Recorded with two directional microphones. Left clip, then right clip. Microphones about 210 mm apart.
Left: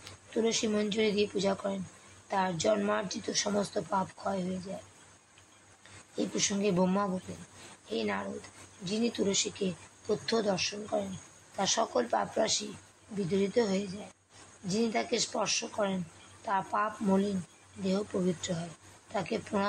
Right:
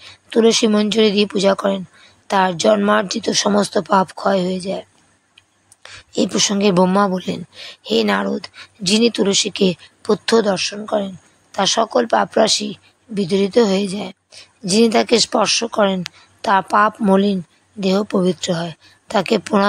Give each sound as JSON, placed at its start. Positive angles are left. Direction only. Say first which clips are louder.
{"t": 0.3, "sound": "speech", "louder": "right 16 dB", "side_deg": -50}
{"t": 5.8, "sound": "a woman's voice", "louder": "right 16 dB", "side_deg": -50}